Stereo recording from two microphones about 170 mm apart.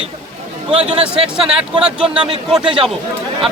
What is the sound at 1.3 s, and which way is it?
A man's voice, 5° right (ahead or behind).